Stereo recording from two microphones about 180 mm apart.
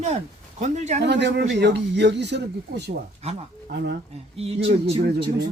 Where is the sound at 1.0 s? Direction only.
70° right (ahead or behind).